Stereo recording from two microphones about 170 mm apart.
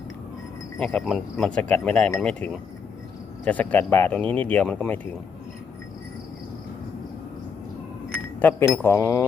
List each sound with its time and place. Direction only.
0.8 s speech: 5° left (ahead or behind)
8.4 s speech: 10° left (ahead or behind)